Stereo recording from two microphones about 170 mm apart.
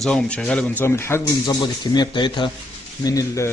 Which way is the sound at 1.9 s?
25° left (ahead or behind).